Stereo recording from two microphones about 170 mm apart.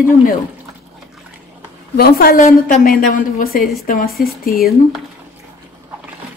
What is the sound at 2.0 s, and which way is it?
A woman's voice, 65° left (ahead or behind).